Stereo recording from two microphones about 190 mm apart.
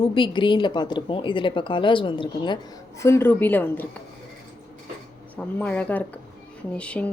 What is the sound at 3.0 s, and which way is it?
Speech, 10° left (ahead or behind).